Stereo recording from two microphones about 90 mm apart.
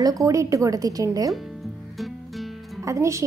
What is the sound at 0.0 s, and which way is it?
A woman's voice, 40° right (ahead or behind).